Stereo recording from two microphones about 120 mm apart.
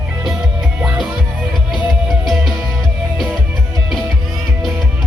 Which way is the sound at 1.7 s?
Centre (ahead or behind).